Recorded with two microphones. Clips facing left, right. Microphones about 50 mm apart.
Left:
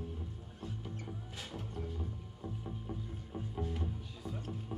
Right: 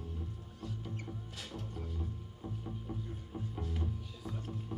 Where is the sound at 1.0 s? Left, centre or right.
Centre.